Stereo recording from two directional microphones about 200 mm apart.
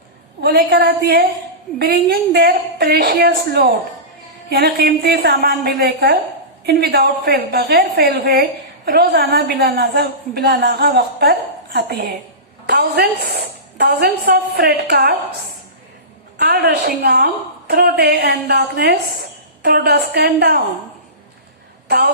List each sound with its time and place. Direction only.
0.4 s a woman's voice: 50° right (ahead or behind)
16.4 s a woman's voice: 50° right (ahead or behind)
21.8 s speech: 55° right (ahead or behind)